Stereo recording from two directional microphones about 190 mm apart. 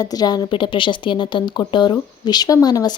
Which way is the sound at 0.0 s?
20° left (ahead or behind).